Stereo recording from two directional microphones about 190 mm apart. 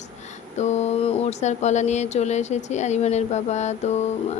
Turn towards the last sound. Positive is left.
turn(degrees=35)  # may be behind; listen again after turning